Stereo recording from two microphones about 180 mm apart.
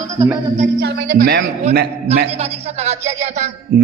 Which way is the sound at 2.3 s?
35° right (ahead or behind).